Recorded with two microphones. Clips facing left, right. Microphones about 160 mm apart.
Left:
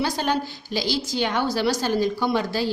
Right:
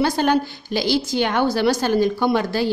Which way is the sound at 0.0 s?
55° right (ahead or behind).